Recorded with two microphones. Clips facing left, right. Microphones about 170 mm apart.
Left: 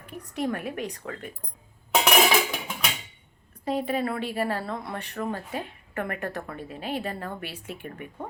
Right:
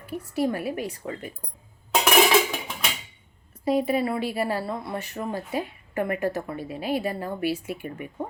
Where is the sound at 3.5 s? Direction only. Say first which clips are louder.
Right 4 dB; 10° right (ahead or behind).